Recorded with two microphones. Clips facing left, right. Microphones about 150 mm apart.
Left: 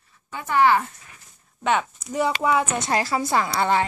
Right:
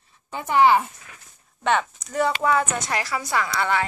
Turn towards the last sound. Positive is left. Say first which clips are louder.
# left 2 dB
turn(degrees=30)  # may be behind; listen again after turning